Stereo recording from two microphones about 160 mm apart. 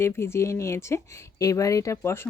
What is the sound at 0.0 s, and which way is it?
Speech, 15° left (ahead or behind).